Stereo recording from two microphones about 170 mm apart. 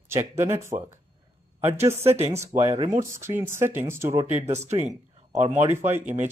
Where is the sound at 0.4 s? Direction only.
15° right (ahead or behind).